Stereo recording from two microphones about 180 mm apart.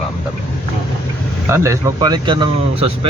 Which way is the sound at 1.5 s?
15° right (ahead or behind).